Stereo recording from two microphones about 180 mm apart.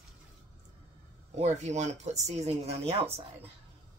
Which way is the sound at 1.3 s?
40° right (ahead or behind).